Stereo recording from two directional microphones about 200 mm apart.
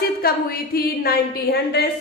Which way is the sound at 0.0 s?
50° left (ahead or behind).